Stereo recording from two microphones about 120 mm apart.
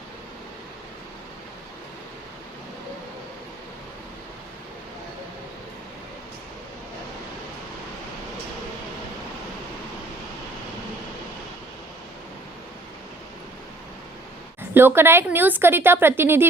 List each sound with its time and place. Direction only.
14.7 s a woman's voice: 20° right (ahead or behind)